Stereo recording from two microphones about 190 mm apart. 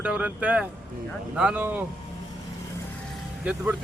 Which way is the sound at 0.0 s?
5° right (ahead or behind).